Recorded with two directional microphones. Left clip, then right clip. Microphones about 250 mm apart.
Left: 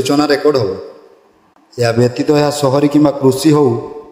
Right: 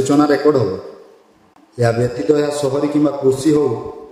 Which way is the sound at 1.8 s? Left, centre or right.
Left.